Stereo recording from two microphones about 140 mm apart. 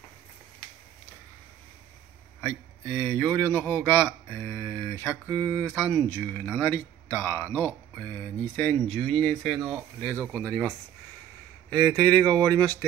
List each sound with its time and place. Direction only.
2.4 s speech: 20° left (ahead or behind); by 10.1 s centre (ahead or behind)
10.1 s speech: 20° right (ahead or behind)
10.4 s speech: 10° left (ahead or behind)
12.0 s speech: 10° left (ahead or behind)